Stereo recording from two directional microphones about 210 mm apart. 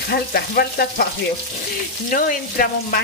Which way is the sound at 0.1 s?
50° left (ahead or behind).